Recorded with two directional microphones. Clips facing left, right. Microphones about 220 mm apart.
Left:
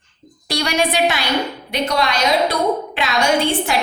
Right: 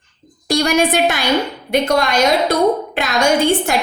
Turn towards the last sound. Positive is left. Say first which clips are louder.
# right 3 dB
turn(degrees=-45)  # may be behind; listen again after turning